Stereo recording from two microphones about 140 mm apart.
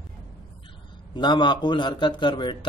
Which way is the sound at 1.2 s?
35° left (ahead or behind).